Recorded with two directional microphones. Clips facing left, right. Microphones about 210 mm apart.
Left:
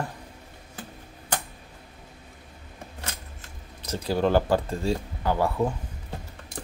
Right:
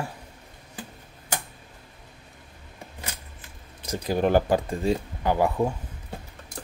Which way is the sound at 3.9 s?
15° right (ahead or behind).